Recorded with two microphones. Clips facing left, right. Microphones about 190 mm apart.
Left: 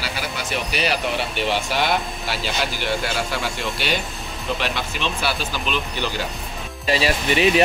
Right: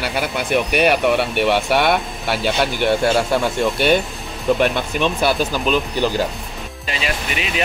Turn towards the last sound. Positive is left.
turn(degrees=35)  # may be behind; listen again after turning